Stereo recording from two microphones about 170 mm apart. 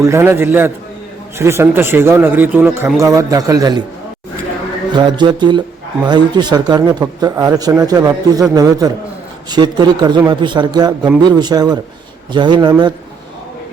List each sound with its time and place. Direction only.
0.0 s a man's voice: 15° right (ahead or behind)
4.9 s speech: 25° right (ahead or behind)